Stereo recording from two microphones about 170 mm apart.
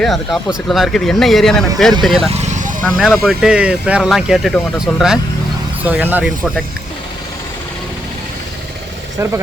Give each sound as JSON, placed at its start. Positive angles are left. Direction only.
{"t": 0.0, "sound": "speech", "side_deg": 0}
{"t": 2.3, "sound": "vehicle", "side_deg": -45}
{"t": 2.8, "sound": "speech", "side_deg": 0}